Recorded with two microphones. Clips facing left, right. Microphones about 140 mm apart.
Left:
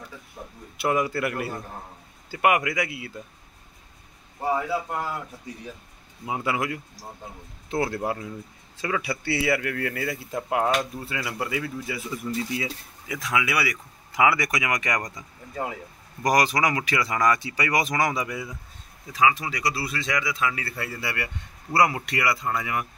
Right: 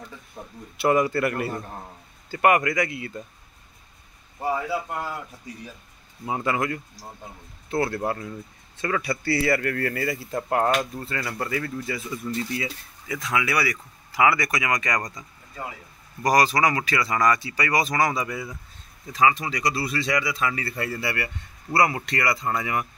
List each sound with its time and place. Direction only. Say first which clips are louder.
0.7 s speech: right 3 dB; 5° left (ahead or behind)
6.2 s speech: right 2 dB; 10° left (ahead or behind)
16.3 s speech: right 2 dB; 15° left (ahead or behind)
19.1 s speech: right 1 dB; 5° left (ahead or behind)